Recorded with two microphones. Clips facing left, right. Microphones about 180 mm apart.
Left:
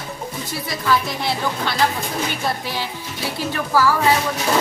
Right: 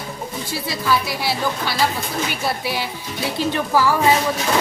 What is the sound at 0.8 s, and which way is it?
A woman's voice, 5° right (ahead or behind).